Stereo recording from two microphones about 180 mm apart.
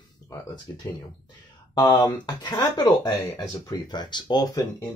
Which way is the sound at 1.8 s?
25° left (ahead or behind).